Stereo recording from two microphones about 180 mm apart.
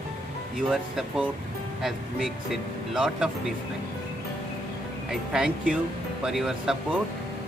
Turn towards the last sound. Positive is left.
turn(degrees=0)  # may be behind; listen again after turning